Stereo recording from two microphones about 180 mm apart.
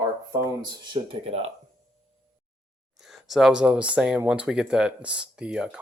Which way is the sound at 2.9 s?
Centre (ahead or behind).